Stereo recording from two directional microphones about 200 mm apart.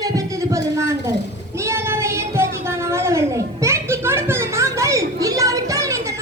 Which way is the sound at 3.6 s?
15° right (ahead or behind).